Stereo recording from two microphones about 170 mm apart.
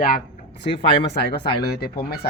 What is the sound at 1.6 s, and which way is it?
Speech, 70° left (ahead or behind).